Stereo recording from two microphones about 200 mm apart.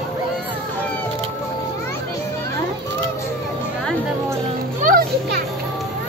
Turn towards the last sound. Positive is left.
turn(degrees=-50)  # may be behind; listen again after turning